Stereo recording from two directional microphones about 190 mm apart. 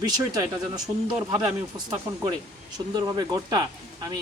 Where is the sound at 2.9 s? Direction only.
20° right (ahead or behind).